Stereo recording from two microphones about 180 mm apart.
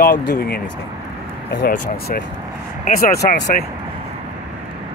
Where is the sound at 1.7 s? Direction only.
60° left (ahead or behind).